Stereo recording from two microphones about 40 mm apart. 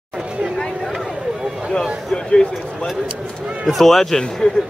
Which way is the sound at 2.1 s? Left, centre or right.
Left.